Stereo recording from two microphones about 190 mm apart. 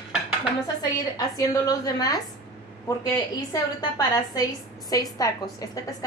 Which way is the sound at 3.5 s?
20° left (ahead or behind).